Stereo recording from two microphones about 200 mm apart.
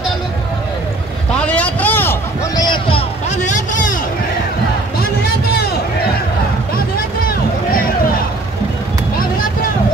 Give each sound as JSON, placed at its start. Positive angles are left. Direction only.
{"t": 1.4, "sound": "a sound", "side_deg": 5}
{"t": 3.3, "sound": "vehicle", "side_deg": 40}
{"t": 7.0, "sound": "vehicle", "side_deg": 45}